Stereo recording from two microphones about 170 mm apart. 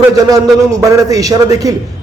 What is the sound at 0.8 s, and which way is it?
Speech, 20° right (ahead or behind).